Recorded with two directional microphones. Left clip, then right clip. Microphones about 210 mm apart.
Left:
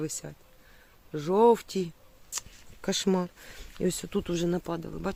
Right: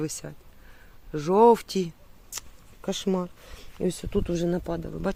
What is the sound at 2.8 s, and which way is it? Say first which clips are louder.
Speech: even; 5° left (ahead or behind).